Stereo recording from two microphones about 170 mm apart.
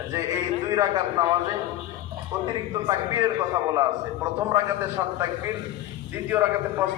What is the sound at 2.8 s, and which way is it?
Speech, 20° right (ahead or behind).